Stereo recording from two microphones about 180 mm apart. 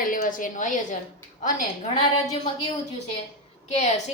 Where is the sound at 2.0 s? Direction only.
25° left (ahead or behind).